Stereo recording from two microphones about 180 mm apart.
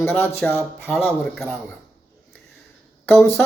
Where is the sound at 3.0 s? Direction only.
15° left (ahead or behind).